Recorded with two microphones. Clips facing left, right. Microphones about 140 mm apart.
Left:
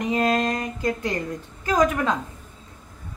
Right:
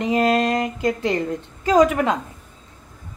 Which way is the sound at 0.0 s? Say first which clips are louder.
Right 3 dB; 30° right (ahead or behind).